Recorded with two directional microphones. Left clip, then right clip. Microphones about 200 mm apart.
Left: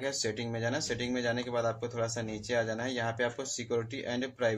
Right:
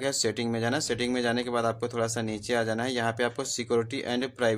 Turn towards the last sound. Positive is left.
turn(degrees=-40)  # may be behind; listen again after turning